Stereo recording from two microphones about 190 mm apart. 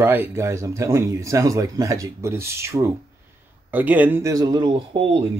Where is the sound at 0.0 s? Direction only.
15° right (ahead or behind).